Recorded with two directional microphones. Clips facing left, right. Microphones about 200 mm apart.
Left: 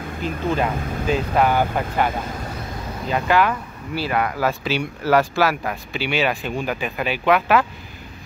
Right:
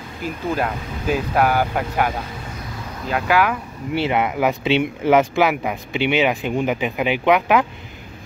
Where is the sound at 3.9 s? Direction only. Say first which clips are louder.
Right 3 dB; 20° right (ahead or behind).